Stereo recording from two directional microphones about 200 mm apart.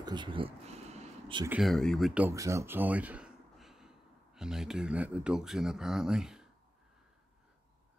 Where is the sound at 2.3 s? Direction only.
15° right (ahead or behind).